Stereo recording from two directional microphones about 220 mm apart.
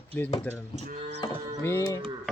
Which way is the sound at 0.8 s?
30° right (ahead or behind).